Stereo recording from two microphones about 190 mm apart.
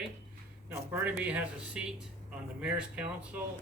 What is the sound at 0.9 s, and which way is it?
Speech, 10° right (ahead or behind).